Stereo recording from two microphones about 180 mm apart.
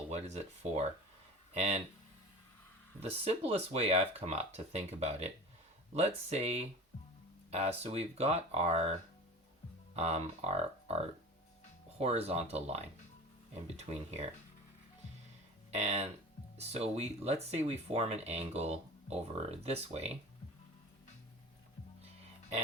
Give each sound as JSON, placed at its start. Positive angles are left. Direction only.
{"t": 0.1, "sound": "speech", "side_deg": -35}
{"t": 3.0, "sound": "speech", "side_deg": -35}
{"t": 15.7, "sound": "speech", "side_deg": -40}